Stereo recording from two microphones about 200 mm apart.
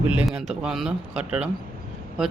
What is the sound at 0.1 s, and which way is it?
A man's voice, 5° right (ahead or behind).